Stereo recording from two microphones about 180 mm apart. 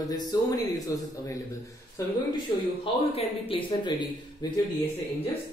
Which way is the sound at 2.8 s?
30° left (ahead or behind).